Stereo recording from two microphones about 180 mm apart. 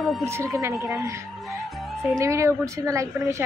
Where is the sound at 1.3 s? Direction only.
Centre (ahead or behind).